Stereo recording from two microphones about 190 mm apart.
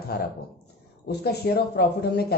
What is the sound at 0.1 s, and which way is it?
Speech, 55° left (ahead or behind).